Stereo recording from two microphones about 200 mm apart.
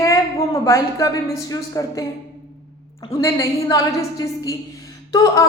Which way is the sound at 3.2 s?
15° left (ahead or behind).